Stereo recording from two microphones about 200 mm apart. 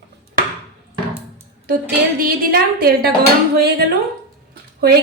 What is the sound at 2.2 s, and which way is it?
Speech, 45° right (ahead or behind).